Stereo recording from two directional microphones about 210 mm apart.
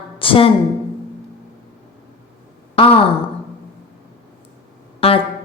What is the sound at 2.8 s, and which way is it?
Speech, 25° left (ahead or behind).